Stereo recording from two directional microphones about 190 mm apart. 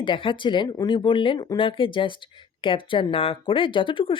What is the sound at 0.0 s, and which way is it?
Speech, 25° left (ahead or behind).